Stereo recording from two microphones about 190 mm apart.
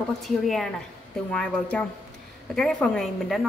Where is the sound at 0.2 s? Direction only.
Centre (ahead or behind).